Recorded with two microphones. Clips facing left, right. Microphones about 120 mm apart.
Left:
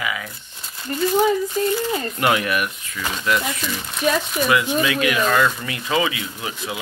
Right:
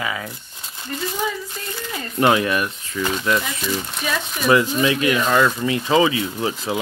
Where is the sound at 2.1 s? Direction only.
25° right (ahead or behind).